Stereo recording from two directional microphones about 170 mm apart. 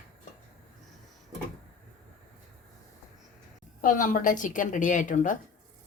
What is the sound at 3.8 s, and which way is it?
A woman's voice, 50° left (ahead or behind).